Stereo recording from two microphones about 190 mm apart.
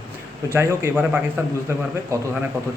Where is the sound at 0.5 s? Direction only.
10° right (ahead or behind).